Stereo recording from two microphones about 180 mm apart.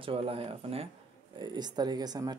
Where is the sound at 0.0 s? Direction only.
30° right (ahead or behind).